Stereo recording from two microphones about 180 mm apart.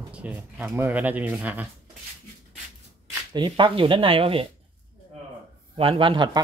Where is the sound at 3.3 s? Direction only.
25° right (ahead or behind).